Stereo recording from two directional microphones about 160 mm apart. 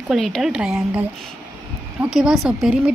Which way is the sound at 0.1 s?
Centre (ahead or behind).